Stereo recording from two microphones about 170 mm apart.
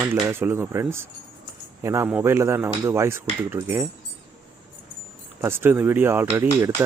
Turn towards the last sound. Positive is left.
turn(degrees=-15)  # may be behind; listen again after turning